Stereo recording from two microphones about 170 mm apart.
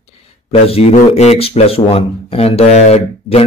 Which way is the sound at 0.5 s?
35° left (ahead or behind).